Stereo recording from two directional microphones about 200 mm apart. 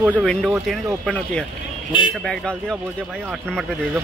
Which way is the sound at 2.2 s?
5° left (ahead or behind).